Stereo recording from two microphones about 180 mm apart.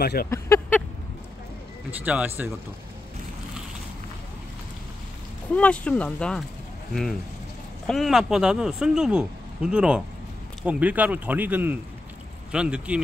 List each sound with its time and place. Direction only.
0.0 s speech: 60° left (ahead or behind)
0.3 s a sound: 10° left (ahead or behind)
2.0 s speech: 10° right (ahead or behind)
5.5 s speech: 5° left (ahead or behind)